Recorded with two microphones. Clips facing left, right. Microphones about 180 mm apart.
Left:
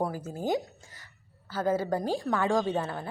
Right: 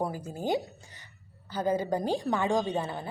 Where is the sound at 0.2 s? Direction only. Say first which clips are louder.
Left 1 dB; 5° left (ahead or behind).